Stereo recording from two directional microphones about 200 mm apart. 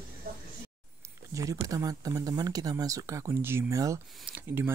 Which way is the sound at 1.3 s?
15° right (ahead or behind).